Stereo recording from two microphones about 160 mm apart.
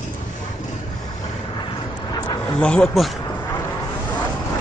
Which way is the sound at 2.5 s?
5° left (ahead or behind).